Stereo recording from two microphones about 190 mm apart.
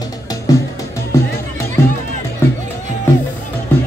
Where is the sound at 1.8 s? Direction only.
15° left (ahead or behind).